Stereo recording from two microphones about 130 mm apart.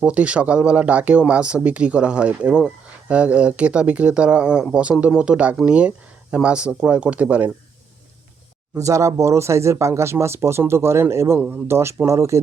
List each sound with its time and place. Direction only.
0.0 s speech: 10° right (ahead or behind)
8.7 s speech: 25° right (ahead or behind)